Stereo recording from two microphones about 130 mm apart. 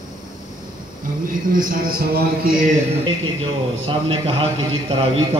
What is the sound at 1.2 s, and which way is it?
Speech, 90° right.